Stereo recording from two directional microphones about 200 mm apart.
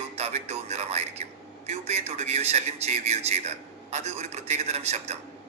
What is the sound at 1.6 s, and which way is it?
A man's voice, 30° right (ahead or behind).